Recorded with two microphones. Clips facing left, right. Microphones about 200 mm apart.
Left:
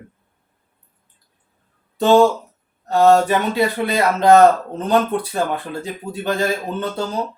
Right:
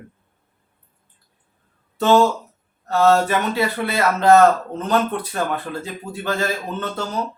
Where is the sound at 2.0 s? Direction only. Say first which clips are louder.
Left 3 dB; 15° left (ahead or behind).